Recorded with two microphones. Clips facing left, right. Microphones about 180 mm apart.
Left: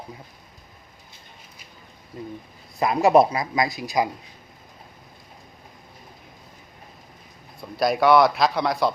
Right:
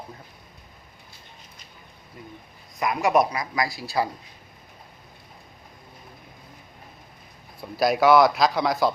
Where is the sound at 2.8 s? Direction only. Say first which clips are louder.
Left 4 dB; 30° left (ahead or behind).